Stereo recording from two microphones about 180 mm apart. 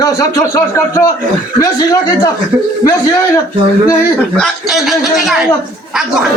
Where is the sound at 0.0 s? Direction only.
20° left (ahead or behind).